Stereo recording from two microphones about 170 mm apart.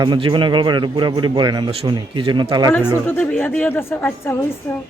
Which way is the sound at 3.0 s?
10° left (ahead or behind).